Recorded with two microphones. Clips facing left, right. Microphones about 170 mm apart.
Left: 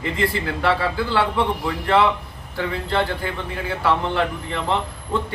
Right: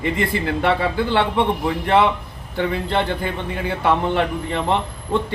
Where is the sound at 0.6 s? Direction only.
20° right (ahead or behind).